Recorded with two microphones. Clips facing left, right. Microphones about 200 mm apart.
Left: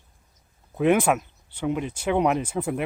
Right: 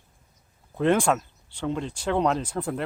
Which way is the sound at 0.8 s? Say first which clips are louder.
Left 2 dB; 10° left (ahead or behind).